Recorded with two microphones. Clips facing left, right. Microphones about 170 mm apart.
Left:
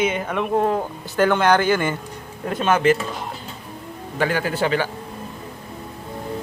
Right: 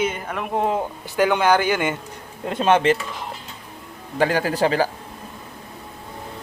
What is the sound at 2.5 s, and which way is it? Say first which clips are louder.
Speech: even; 30° right (ahead or behind).